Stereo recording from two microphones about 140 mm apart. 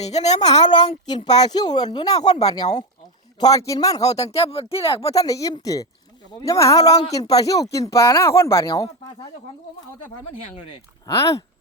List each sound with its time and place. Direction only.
0.0 s speech: 50° left (ahead or behind)
0.6 s speech: 30° left (ahead or behind)
4.1 s speech: 50° left (ahead or behind)
5.1 s speech: 25° left (ahead or behind)
10.4 s speech: 40° left (ahead or behind)
11.0 s speech: 20° left (ahead or behind)